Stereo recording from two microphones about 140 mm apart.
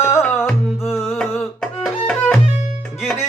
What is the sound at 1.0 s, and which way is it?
Music, centre (ahead or behind).